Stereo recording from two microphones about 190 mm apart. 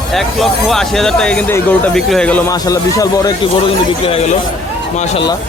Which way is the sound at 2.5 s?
20° left (ahead or behind).